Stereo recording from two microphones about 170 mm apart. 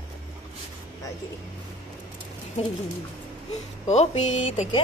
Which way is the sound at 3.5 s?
40° left (ahead or behind).